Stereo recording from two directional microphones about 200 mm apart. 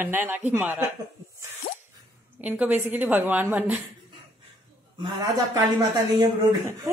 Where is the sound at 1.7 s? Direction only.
55° left (ahead or behind).